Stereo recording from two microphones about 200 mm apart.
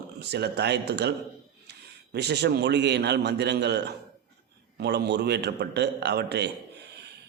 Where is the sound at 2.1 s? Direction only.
55° right (ahead or behind).